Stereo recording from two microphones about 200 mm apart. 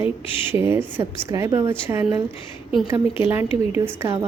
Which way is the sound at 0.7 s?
10° right (ahead or behind).